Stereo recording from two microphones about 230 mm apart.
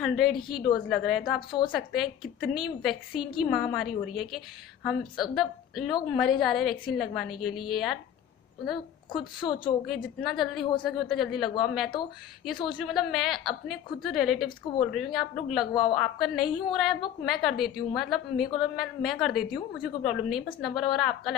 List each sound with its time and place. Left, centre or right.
0.0 s a woman's voice: centre
9.1 s a woman's voice: left
10.2 s a woman's voice: centre